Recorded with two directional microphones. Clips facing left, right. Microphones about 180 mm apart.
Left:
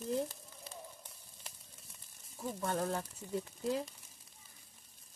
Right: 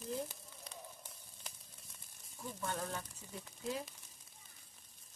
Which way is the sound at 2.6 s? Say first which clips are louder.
Left 6 dB; 35° left (ahead or behind).